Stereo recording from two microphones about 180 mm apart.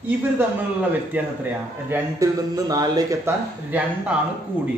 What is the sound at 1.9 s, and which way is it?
Speech, 20° right (ahead or behind).